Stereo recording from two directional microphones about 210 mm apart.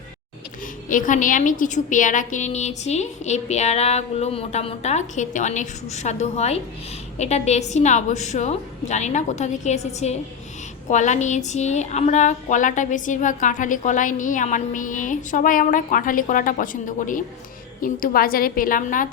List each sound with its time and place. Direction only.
0.9 s speech: 40° left (ahead or behind)